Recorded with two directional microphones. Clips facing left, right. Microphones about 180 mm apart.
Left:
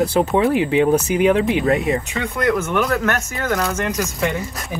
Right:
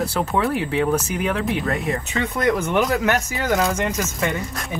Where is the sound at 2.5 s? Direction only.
15° right (ahead or behind).